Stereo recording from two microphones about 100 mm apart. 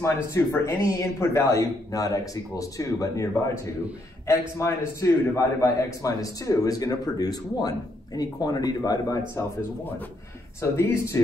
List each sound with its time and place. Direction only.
0.0 s a man's voice: 30° left (ahead or behind)
4.3 s a man's voice: 30° left (ahead or behind)
10.6 s speech: 30° left (ahead or behind)